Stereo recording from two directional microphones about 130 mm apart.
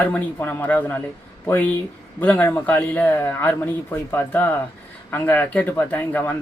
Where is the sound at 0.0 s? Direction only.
15° left (ahead or behind).